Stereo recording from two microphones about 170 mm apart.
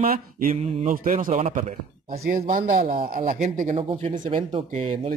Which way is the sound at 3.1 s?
50° right (ahead or behind).